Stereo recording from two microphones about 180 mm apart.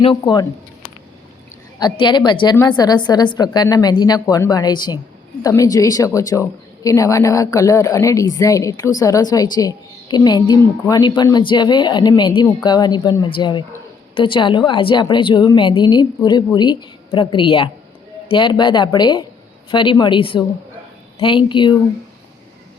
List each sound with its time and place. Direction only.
0.0 s a woman's voice: 25° left (ahead or behind)
1.8 s a woman's voice: 25° left (ahead or behind)